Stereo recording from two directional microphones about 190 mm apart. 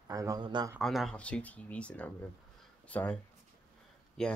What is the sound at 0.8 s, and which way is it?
Speech, centre (ahead or behind).